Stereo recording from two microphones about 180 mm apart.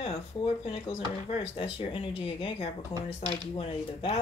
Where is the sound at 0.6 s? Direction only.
35° left (ahead or behind).